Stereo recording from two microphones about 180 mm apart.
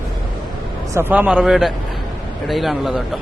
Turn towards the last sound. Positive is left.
turn(degrees=0)  # may be behind; listen again after turning